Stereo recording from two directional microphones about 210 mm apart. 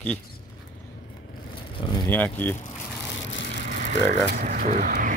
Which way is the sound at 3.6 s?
35° right (ahead or behind).